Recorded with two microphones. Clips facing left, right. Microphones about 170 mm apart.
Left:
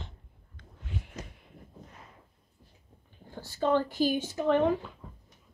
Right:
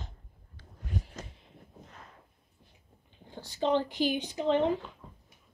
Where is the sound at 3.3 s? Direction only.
20° right (ahead or behind).